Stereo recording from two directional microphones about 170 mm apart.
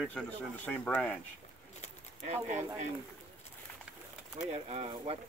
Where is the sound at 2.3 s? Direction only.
45° right (ahead or behind).